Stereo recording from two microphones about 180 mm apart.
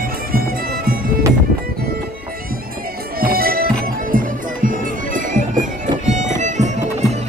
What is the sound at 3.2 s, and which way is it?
Music, 55° right (ahead or behind).